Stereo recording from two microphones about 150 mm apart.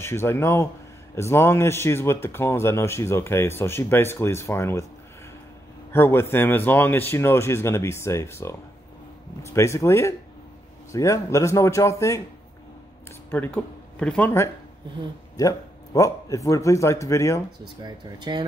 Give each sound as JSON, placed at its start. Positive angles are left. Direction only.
{"t": 0.0, "sound": "speech", "side_deg": 15}
{"t": 5.9, "sound": "a man's voice", "side_deg": 15}
{"t": 13.3, "sound": "speech", "side_deg": 10}
{"t": 15.3, "sound": "speech", "side_deg": 20}
{"t": 17.8, "sound": "speech", "side_deg": -30}